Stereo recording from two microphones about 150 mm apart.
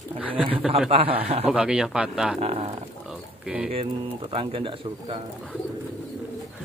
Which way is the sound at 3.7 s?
40° right (ahead or behind).